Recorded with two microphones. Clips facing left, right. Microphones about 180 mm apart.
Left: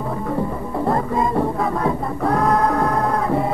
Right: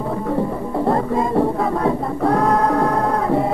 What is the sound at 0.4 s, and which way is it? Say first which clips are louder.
Music: right 2 dB; 30° right (ahead or behind).